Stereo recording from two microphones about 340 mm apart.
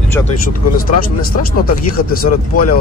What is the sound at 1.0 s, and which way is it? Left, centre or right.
Speech, left.